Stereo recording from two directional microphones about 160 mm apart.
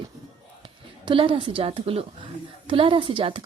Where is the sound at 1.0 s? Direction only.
35° right (ahead or behind).